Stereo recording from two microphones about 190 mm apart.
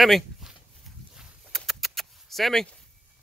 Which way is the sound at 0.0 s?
Centre (ahead or behind).